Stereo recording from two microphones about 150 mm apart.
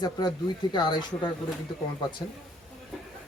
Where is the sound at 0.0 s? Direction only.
25° left (ahead or behind).